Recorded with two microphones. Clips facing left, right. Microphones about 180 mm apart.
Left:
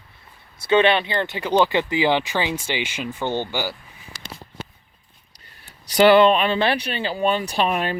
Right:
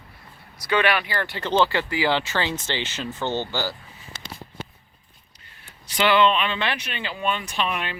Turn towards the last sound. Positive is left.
turn(degrees=40)  # may be behind; listen again after turning